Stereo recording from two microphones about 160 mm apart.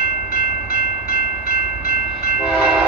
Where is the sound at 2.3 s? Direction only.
10° right (ahead or behind).